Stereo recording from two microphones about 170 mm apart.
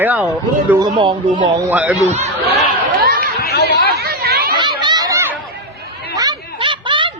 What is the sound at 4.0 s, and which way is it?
Chatter, 70° right (ahead or behind).